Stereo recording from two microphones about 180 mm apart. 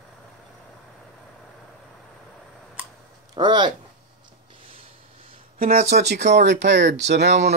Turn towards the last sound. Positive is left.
turn(degrees=-75)  # may be behind; listen again after turning